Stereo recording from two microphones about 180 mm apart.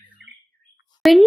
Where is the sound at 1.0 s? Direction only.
Centre (ahead or behind).